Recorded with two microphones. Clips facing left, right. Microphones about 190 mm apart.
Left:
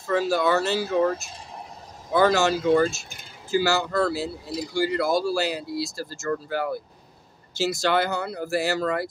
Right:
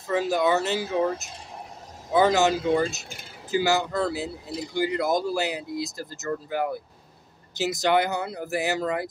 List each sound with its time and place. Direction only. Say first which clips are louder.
0.1 s speech: left 1 dB; 20° right (ahead or behind)